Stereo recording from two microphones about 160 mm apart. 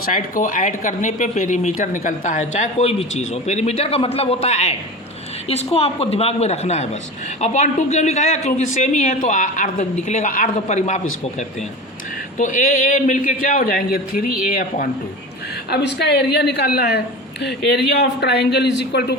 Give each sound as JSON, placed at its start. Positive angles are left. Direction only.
{"t": 0.0, "sound": "speech", "side_deg": 60}
{"t": 5.7, "sound": "a woman's voice", "side_deg": 40}
{"t": 15.7, "sound": "a woman's voice", "side_deg": 90}